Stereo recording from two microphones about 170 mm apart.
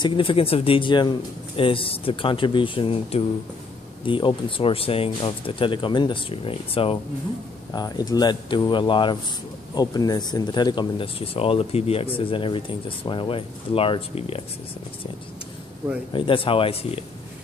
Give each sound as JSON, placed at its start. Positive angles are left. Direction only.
{"t": 0.0, "sound": "speech", "side_deg": 30}
{"t": 7.7, "sound": "speech", "side_deg": 25}
{"t": 16.1, "sound": "speech", "side_deg": 30}